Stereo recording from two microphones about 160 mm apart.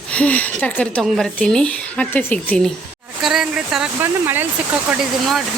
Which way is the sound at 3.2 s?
5° right (ahead or behind).